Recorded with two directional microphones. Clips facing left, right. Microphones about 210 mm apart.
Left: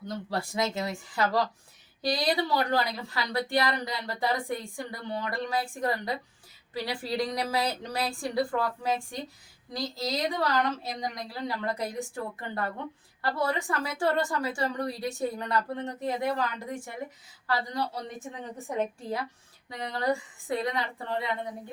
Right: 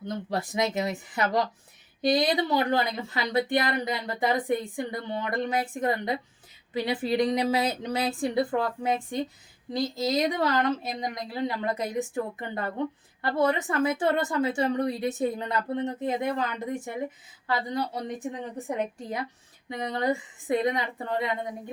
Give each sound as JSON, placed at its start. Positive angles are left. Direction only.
{"t": 0.3, "sound": "a woman's voice", "side_deg": -20}